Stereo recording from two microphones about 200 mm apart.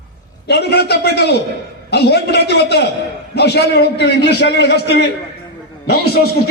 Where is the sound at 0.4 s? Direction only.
55° left (ahead or behind).